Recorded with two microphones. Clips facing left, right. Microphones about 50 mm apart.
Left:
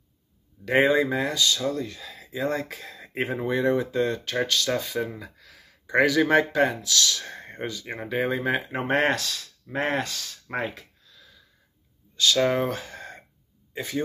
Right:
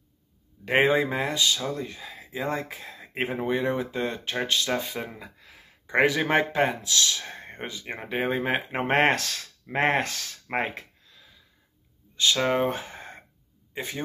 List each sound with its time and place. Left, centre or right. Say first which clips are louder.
0.7 s speech: left 1 dB; right
12.2 s speech: left 1 dB; right